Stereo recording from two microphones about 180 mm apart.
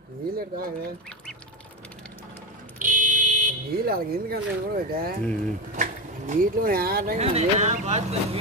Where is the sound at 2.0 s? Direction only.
10° left (ahead or behind).